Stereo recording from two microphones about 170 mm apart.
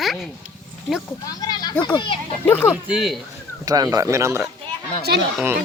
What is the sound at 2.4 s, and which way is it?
Speech, 10° left (ahead or behind).